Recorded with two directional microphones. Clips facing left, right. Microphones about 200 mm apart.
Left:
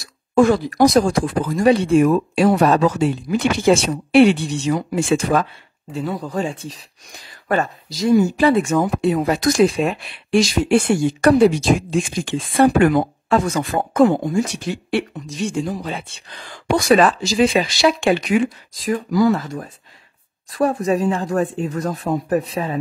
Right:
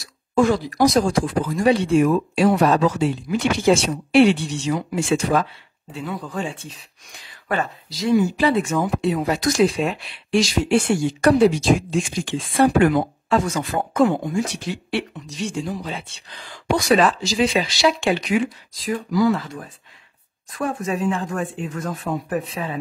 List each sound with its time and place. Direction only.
0.3 s speech: 55° left (ahead or behind)
5.9 s speech: 40° left (ahead or behind)